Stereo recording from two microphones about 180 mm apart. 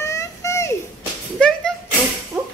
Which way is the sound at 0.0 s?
15° left (ahead or behind).